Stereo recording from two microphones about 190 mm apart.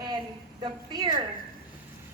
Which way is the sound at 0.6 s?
25° right (ahead or behind).